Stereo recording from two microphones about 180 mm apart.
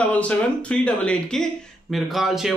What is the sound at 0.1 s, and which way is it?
Speech, 5° left (ahead or behind).